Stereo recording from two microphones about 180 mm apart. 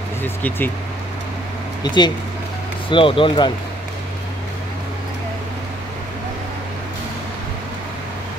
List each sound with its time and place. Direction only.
0.2 s speech: 10° left (ahead or behind)
1.8 s speech: 25° left (ahead or behind)